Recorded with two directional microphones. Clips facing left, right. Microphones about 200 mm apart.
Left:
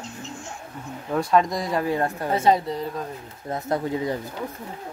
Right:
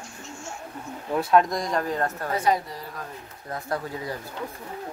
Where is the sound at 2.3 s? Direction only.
25° left (ahead or behind).